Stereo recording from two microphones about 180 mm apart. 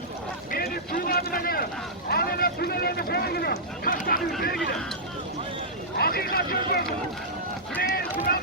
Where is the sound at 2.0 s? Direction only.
60° left (ahead or behind).